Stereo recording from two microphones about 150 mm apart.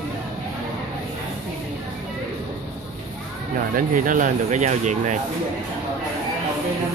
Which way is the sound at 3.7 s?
65° right (ahead or behind).